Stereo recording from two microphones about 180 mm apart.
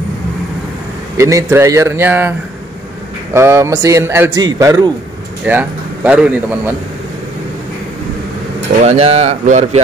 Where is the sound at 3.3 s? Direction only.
15° right (ahead or behind).